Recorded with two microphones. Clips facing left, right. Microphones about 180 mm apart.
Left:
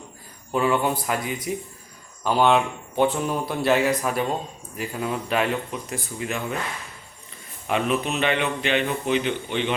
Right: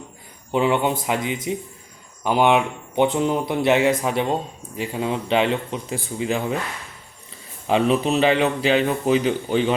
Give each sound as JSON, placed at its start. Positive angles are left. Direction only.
{"t": 0.5, "sound": "a man's voice", "side_deg": -20}
{"t": 7.7, "sound": "a man's voice", "side_deg": -30}